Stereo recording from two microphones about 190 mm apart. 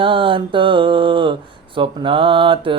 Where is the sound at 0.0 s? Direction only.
25° right (ahead or behind).